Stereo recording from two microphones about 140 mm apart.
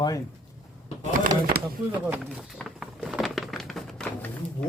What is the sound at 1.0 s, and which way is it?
Speech, 80° right.